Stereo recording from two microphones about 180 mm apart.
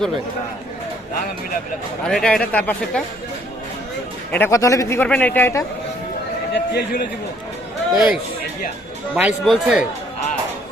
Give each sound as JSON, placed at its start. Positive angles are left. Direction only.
{"t": 2.0, "sound": "speech", "side_deg": 5}
{"t": 4.3, "sound": "a man's voice", "side_deg": 10}
{"t": 6.5, "sound": "a man's voice", "side_deg": 65}
{"t": 7.9, "sound": "speech", "side_deg": -5}